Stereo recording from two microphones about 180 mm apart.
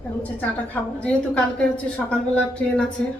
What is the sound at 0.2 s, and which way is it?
A woman's voice, 10° left (ahead or behind).